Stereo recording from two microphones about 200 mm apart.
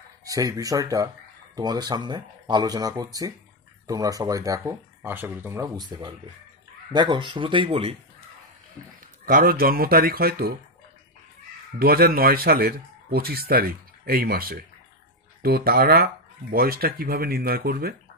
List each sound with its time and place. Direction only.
0.2 s speech: 15° right (ahead or behind)
5.9 s speech: 20° right (ahead or behind)
9.2 s speech: 45° right (ahead or behind)
11.8 s speech: 50° right (ahead or behind)